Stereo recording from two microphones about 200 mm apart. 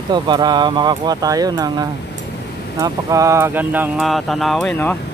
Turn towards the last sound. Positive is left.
turn(degrees=10)  # may be behind; listen again after turning